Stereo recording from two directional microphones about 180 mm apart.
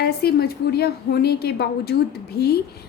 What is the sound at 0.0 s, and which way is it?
A woman's voice, 60° left (ahead or behind).